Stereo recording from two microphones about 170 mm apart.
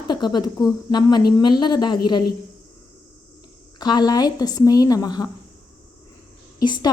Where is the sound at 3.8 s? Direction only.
25° left (ahead or behind).